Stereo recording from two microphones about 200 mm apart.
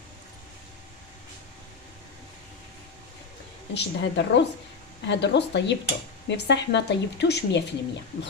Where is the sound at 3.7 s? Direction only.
60° left (ahead or behind).